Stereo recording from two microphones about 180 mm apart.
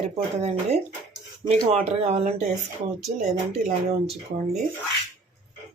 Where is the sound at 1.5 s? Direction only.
35° right (ahead or behind).